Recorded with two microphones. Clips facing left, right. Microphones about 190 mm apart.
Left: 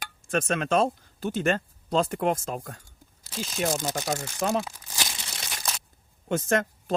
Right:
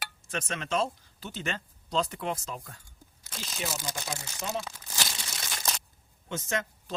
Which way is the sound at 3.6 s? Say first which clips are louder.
Left 8 dB; 55° left (ahead or behind).